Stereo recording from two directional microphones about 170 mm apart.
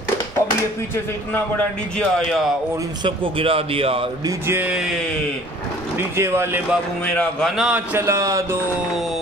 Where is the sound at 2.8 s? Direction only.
30° right (ahead or behind).